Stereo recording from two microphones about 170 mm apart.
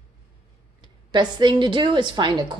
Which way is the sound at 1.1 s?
25° right (ahead or behind).